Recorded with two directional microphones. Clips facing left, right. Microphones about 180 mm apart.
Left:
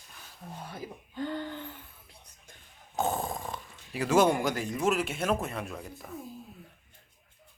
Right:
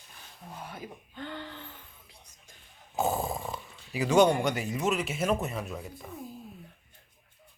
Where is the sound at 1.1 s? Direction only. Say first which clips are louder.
Left 7 dB; 40° left (ahead or behind).